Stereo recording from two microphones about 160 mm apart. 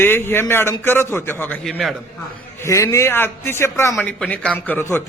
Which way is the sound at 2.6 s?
15° left (ahead or behind).